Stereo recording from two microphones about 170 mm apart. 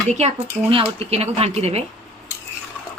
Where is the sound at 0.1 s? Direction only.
40° right (ahead or behind).